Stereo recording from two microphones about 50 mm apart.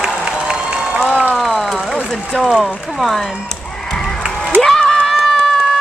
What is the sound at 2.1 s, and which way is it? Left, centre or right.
Speech, centre.